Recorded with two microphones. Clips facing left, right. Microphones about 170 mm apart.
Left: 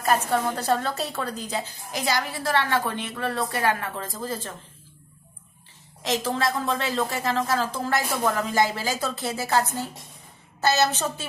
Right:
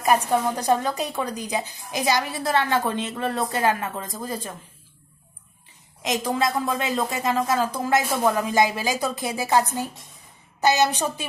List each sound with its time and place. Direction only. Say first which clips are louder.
0.0 s a woman's voice: right 2 dB; 15° right (ahead or behind)
6.0 s a woman's voice: right 2 dB; 15° right (ahead or behind)